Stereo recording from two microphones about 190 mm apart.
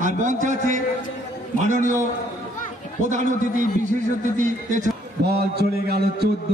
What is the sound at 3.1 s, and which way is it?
A man's voice, 40° right (ahead or behind).